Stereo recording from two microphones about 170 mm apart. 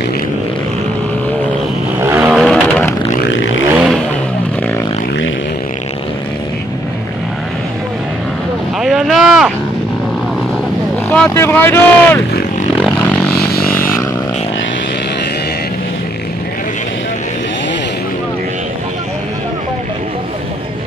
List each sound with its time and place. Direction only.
2.0 s vehicle: 15° right (ahead or behind)
2.3 s vehicle: 5° left (ahead or behind)
8.7 s vehicle: centre (ahead or behind)
11.1 s boat: 10° left (ahead or behind)
13.5 s a sound: 60° left (ahead or behind)
13.7 s a sound: 15° left (ahead or behind)